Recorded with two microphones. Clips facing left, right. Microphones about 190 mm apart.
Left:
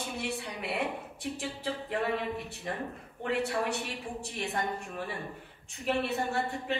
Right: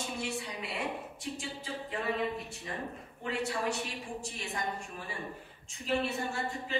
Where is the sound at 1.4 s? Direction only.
65° left (ahead or behind).